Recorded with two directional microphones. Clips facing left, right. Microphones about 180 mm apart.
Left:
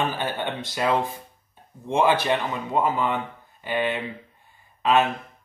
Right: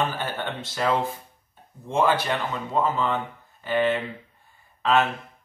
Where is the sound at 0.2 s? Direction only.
15° left (ahead or behind).